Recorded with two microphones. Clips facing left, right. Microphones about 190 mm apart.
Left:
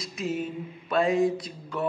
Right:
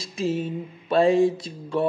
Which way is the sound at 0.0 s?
30° right (ahead or behind).